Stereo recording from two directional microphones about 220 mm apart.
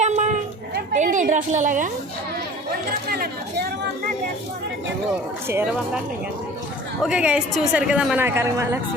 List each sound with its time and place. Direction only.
0.0 s a sound: 30° right (ahead or behind)
3.1 s speech: 45° right (ahead or behind)
5.5 s speech: 10° right (ahead or behind)
7.0 s a woman's voice: 5° right (ahead or behind)